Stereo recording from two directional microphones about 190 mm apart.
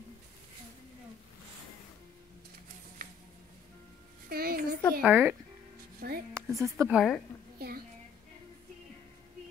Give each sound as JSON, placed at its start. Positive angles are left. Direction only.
{"t": 4.3, "sound": "a sound", "side_deg": -50}
{"t": 5.0, "sound": "speech", "side_deg": -10}
{"t": 5.9, "sound": "speech", "side_deg": -50}
{"t": 6.3, "sound": "a woman's voice", "side_deg": -15}
{"t": 6.9, "sound": "a woman's voice", "side_deg": 0}
{"t": 7.5, "sound": "a sound", "side_deg": -55}